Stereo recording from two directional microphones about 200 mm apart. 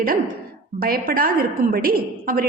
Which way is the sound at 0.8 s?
45° right (ahead or behind).